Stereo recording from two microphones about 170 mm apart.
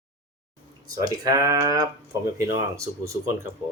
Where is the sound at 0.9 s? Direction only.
20° right (ahead or behind).